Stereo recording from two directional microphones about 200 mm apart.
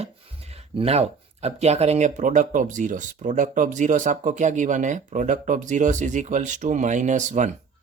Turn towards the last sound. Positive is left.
turn(degrees=-35)  # may be behind; listen again after turning